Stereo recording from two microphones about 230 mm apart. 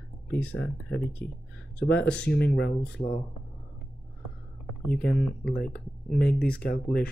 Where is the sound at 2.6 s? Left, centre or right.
Left.